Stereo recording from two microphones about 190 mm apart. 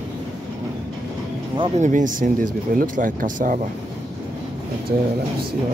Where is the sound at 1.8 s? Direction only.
40° right (ahead or behind).